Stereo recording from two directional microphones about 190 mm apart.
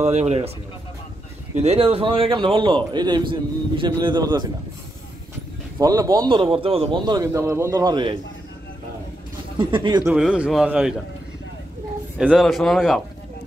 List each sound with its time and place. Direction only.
0.0 s speech: 35° right (ahead or behind)
1.5 s a man's voice: 35° right (ahead or behind)
5.8 s a man's voice: 20° right (ahead or behind)
9.6 s a man's voice: 25° right (ahead or behind)
10.0 s a man's voice: 5° right (ahead or behind)
12.2 s a man's voice: 5° right (ahead or behind)